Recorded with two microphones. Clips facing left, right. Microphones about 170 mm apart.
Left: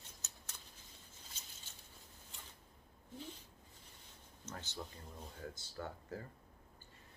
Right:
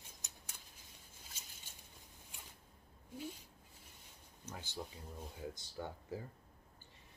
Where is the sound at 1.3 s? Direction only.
10° right (ahead or behind).